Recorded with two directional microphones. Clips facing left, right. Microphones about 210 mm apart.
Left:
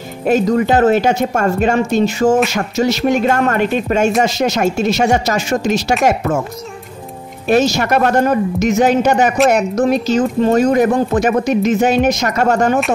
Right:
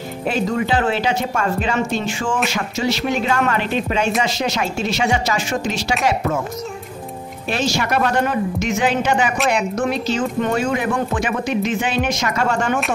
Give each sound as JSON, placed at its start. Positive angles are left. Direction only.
{"t": 0.3, "sound": "speech", "side_deg": 45}
{"t": 7.4, "sound": "speech", "side_deg": 45}